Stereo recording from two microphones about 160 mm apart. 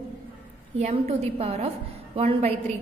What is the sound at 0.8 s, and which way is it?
A woman's voice, 40° right (ahead or behind).